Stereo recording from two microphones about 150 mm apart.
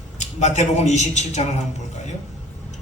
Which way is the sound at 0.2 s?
50° left (ahead or behind).